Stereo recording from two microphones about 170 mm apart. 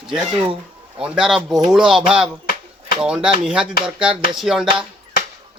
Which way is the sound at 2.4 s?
60° left (ahead or behind).